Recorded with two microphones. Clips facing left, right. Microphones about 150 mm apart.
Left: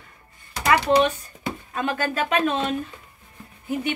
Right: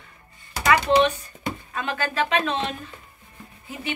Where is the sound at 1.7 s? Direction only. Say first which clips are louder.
Left 3 dB; 40° left (ahead or behind).